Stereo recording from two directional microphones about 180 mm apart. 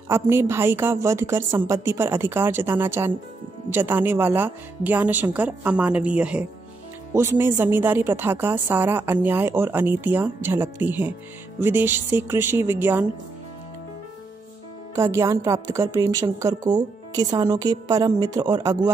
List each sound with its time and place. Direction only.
0.1 s a woman's voice: 15° right (ahead or behind)
15.0 s a woman's voice: 15° right (ahead or behind)